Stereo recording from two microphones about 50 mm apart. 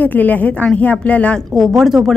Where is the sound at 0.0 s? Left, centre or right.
Left.